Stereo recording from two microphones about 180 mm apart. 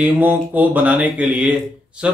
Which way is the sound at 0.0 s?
10° right (ahead or behind).